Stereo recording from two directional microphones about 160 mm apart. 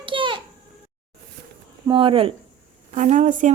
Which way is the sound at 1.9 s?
35° right (ahead or behind).